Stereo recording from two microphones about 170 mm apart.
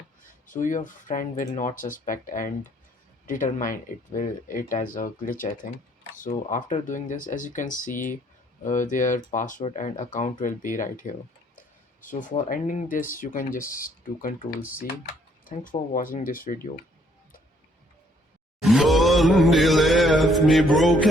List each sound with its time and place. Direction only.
0.4 s speech: 50° left (ahead or behind)
15.4 s speech: 55° left (ahead or behind)
18.6 s a sound: centre (ahead or behind)